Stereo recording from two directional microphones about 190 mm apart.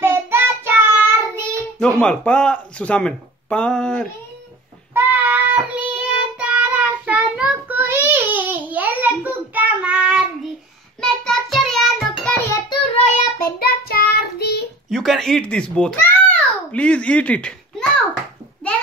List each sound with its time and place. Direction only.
0.0 s child singing: 10° right (ahead or behind)
2.0 s speech: 5° left (ahead or behind)
4.9 s child singing: 10° right (ahead or behind)
12.9 s child singing: 40° left (ahead or behind)
13.6 s child singing: 55° left (ahead or behind)
14.9 s babbling: centre (ahead or behind)